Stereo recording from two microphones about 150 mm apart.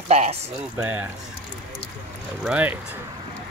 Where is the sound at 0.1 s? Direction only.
45° right (ahead or behind).